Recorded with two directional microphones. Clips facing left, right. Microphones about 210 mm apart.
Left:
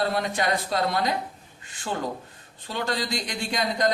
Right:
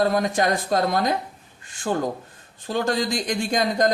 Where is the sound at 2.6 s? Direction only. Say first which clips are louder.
Right 6 dB; 45° right (ahead or behind).